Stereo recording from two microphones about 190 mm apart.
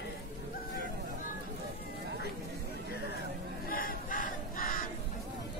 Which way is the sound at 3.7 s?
45° left (ahead or behind).